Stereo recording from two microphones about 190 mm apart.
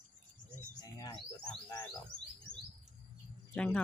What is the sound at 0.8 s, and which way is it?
Speech, 20° left (ahead or behind).